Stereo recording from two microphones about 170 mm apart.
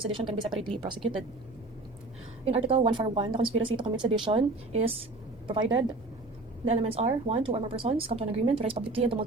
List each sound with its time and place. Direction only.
0.1 s speech: 30° right (ahead or behind)
2.4 s speech: 35° right (ahead or behind)
6.7 s speech: 35° right (ahead or behind)